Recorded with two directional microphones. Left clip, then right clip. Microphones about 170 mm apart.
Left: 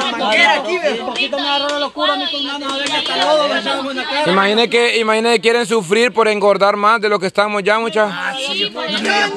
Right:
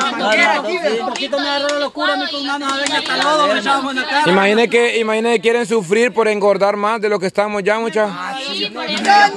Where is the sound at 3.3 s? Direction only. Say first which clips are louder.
Right 1 dB; 55° right (ahead or behind).